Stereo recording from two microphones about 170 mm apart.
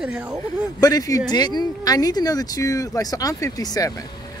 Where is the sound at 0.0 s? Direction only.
5° right (ahead or behind).